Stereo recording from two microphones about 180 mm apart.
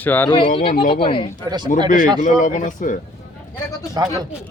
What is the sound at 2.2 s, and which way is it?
Speech, 45° left (ahead or behind).